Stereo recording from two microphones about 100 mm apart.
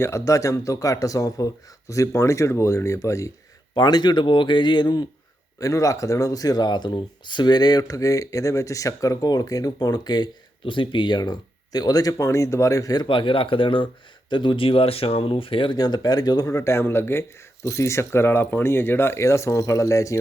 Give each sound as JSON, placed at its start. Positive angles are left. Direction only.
{"t": 0.0, "sound": "speech", "side_deg": 30}
{"t": 3.8, "sound": "speech", "side_deg": 45}
{"t": 5.5, "sound": "speech", "side_deg": 35}
{"t": 13.1, "sound": "speech", "side_deg": 60}
{"t": 15.8, "sound": "speech", "side_deg": 40}